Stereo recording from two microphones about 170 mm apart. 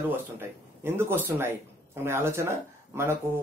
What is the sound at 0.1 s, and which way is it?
Speech, 15° right (ahead or behind).